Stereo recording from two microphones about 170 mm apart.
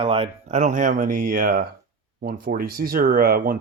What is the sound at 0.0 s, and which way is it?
Speech, 35° right (ahead or behind).